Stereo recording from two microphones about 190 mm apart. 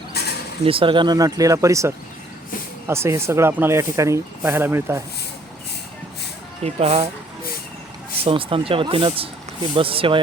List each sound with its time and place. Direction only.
0.1 s a sound: 55° left (ahead or behind)
0.6 s speech: 30° right (ahead or behind); by 5.0 s 15° right (ahead or behind)
6.6 s speech: 35° right (ahead or behind)
8.2 s speech: 30° right (ahead or behind)